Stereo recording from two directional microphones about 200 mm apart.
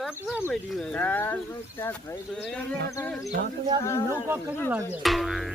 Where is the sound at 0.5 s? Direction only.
Centre (ahead or behind).